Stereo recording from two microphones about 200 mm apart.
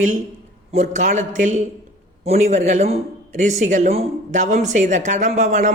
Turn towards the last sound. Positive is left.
turn(degrees=-35)  # may be behind; listen again after turning